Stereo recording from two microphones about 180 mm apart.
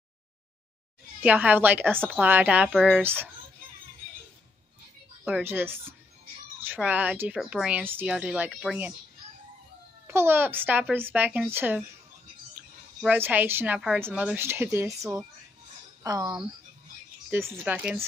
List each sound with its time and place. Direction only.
1.2 s speech: 5° right (ahead or behind)
5.2 s speech: 10° right (ahead or behind)
10.0 s speech: 15° right (ahead or behind)
13.0 s speech: 10° right (ahead or behind)
16.0 s speech: 20° right (ahead or behind)